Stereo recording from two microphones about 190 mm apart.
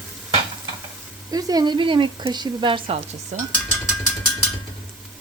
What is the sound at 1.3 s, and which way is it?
Speech, 20° right (ahead or behind).